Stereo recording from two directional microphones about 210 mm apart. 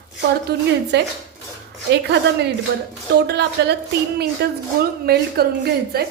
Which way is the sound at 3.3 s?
50° right (ahead or behind).